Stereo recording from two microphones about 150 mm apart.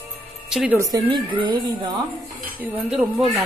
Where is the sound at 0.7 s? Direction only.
25° right (ahead or behind).